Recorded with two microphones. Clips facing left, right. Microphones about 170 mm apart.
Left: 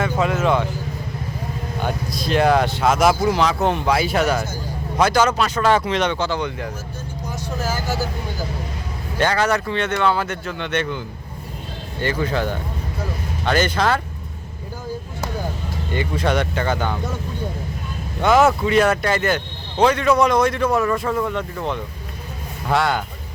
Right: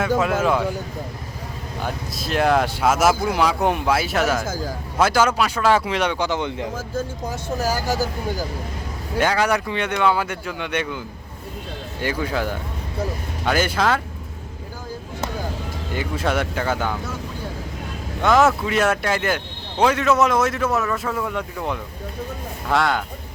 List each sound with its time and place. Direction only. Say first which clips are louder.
1.8 s speech: left 3 dB; centre (ahead or behind)
4.4 s speech: right 3 dB; 90° right
4.9 s speech: left 1 dB; 5° right (ahead or behind)
7.6 s speech: right 2 dB; 40° right (ahead or behind)
9.1 s speech: even; 10° right (ahead or behind)
15.9 s speech: left 2 dB; 5° right (ahead or behind)
18.2 s speech: left 1 dB; centre (ahead or behind)